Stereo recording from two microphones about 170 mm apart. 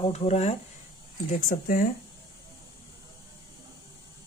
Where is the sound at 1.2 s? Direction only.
50° left (ahead or behind).